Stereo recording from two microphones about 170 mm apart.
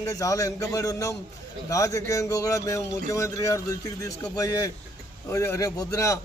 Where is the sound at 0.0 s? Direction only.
20° left (ahead or behind).